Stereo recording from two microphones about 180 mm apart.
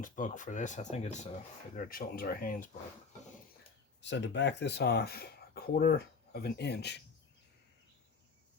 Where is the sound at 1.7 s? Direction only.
50° left (ahead or behind).